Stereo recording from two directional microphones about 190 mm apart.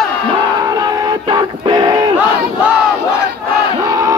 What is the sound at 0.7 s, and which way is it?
Music, 20° right (ahead or behind).